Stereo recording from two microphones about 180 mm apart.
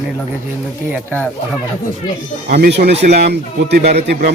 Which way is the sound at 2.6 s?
65° right (ahead or behind).